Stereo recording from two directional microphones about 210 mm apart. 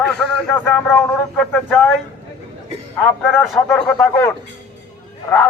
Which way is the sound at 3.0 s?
Centre (ahead or behind).